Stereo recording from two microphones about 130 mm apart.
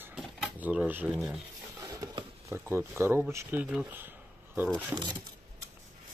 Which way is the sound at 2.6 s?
15° right (ahead or behind).